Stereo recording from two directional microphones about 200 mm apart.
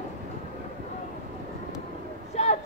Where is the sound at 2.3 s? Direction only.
35° left (ahead or behind).